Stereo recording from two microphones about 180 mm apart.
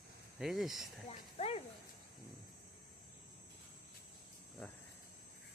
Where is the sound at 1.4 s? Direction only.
35° left (ahead or behind).